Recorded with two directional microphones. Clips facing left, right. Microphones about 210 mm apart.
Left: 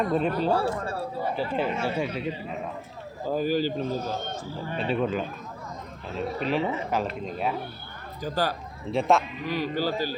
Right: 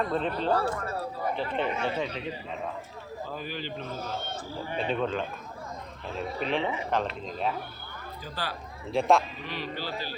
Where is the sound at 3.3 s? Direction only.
40° left (ahead or behind).